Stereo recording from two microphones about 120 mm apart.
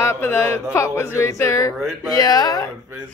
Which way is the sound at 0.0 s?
20° left (ahead or behind).